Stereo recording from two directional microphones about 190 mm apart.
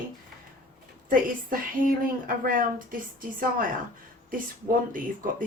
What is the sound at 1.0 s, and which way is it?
Speech, 45° right (ahead or behind).